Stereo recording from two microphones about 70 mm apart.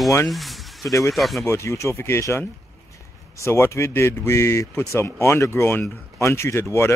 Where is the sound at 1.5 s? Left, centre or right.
Left.